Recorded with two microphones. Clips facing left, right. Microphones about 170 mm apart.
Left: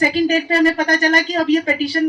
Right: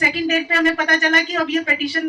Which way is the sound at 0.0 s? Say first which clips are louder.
Left 4 dB; 35° left (ahead or behind).